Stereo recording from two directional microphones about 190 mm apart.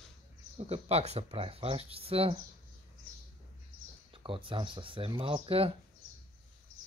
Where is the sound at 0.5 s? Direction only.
35° right (ahead or behind).